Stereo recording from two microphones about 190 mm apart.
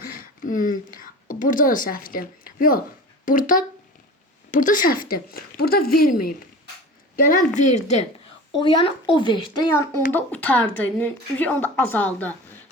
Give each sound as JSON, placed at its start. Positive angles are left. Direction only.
{"t": 0.0, "sound": "a sound", "side_deg": 45}
{"t": 3.2, "sound": "a woman's voice", "side_deg": 45}
{"t": 8.5, "sound": "speech", "side_deg": 25}
{"t": 10.1, "sound": "speech", "side_deg": 10}